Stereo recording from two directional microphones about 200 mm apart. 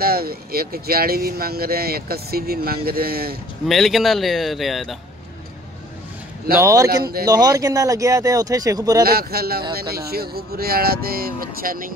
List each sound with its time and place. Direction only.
0.0 s speech: 50° right (ahead or behind)
3.6 s speech: centre (ahead or behind)
6.6 s speech: 15° right (ahead or behind)
6.9 s speech: 50° right (ahead or behind)
7.2 s speech: 20° right (ahead or behind)
9.0 s speech: 50° right (ahead or behind)